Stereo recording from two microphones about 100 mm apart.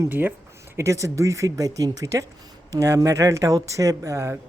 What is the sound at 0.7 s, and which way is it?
Speech, 30° right (ahead or behind).